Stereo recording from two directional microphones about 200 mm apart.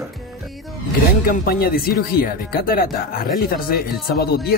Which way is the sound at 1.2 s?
50° left (ahead or behind).